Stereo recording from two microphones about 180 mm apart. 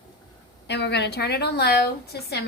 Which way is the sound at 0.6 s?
70° left (ahead or behind).